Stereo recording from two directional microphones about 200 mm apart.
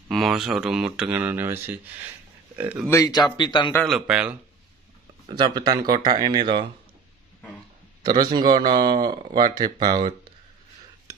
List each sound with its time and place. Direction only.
0.1 s speech: centre (ahead or behind)
2.9 s speech: 20° left (ahead or behind)
3.7 s speech: centre (ahead or behind)
5.2 s speech: 25° right (ahead or behind)
8.0 s speech: 20° right (ahead or behind)
11.1 s a sound: 10° right (ahead or behind)